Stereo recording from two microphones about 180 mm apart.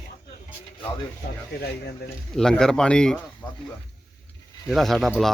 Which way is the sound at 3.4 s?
25° left (ahead or behind).